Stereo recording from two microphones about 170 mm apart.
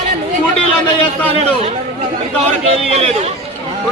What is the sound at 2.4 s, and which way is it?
Speech, 40° right (ahead or behind).